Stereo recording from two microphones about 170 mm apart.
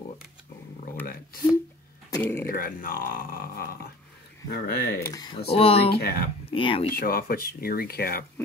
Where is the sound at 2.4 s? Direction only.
55° left (ahead or behind).